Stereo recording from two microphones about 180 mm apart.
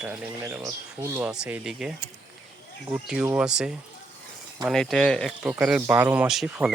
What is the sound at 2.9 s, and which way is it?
Speech, 5° right (ahead or behind).